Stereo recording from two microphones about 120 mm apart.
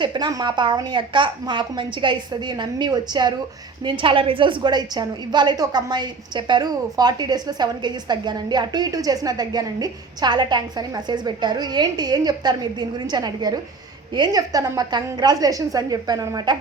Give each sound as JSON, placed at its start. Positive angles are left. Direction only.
{"t": 0.0, "sound": "a woman's voice", "side_deg": -40}